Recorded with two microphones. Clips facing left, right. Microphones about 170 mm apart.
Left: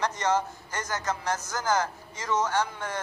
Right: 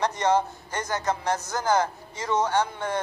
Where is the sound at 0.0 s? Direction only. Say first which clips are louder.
Right 4 dB; 60° right (ahead or behind).